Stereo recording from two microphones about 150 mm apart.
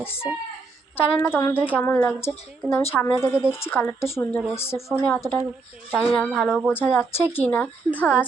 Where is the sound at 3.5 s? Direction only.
15° left (ahead or behind).